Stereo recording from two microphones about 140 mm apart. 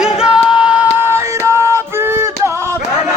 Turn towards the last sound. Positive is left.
turn(degrees=-20)  # may be behind; listen again after turning